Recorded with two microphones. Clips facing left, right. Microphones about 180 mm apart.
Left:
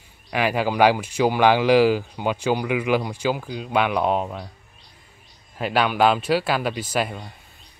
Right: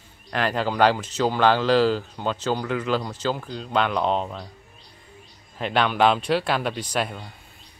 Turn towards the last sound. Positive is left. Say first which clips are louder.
# left 2 dB
turn(degrees=5)  # may be behind; listen again after turning